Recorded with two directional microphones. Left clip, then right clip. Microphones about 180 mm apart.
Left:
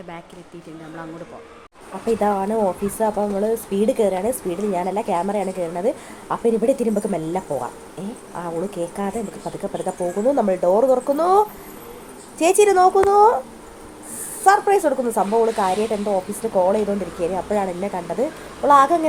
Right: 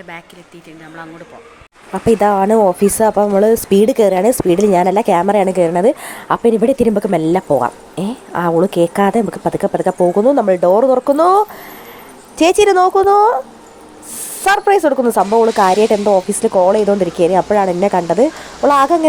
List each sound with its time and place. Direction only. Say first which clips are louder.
2.0 s speech: right 9 dB; 60° right (ahead or behind); by 13.4 s 45° right (ahead or behind)
14.4 s speech: right 4 dB; 45° right (ahead or behind)